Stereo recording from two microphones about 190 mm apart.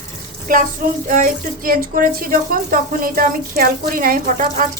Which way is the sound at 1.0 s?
45° right (ahead or behind).